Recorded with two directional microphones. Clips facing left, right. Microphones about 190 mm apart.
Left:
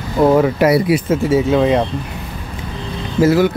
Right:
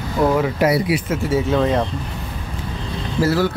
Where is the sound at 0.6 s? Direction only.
70° left (ahead or behind).